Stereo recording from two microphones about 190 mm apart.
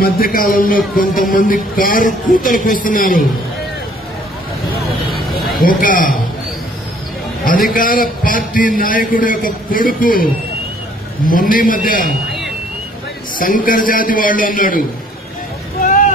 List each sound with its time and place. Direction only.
0.0 s a man's voice: 50° left (ahead or behind)
5.6 s a man's voice: 50° left (ahead or behind)
7.4 s a man's voice: 50° left (ahead or behind)
13.4 s a man's voice: 45° left (ahead or behind)